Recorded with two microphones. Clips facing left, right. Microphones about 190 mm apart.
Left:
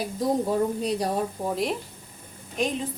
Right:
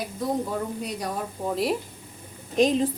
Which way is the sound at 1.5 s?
Centre (ahead or behind).